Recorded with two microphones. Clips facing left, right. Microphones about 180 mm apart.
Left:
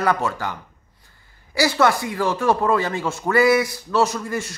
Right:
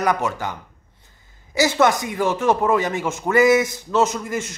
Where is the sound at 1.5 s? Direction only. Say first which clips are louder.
Right 1 dB; 20° right (ahead or behind).